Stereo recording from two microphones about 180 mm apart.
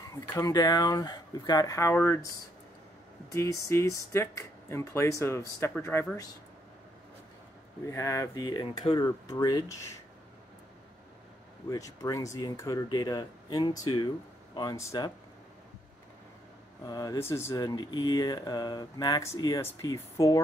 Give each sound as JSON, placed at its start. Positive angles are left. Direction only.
{"t": 0.1, "sound": "speech", "side_deg": 15}
{"t": 7.8, "sound": "speech", "side_deg": 15}
{"t": 11.7, "sound": "speech", "side_deg": 20}
{"t": 16.8, "sound": "speech", "side_deg": 20}